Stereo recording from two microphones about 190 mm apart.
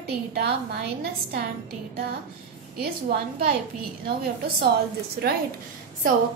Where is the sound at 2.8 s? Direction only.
55° right (ahead or behind).